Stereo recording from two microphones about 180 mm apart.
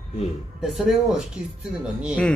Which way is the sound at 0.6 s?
Centre (ahead or behind).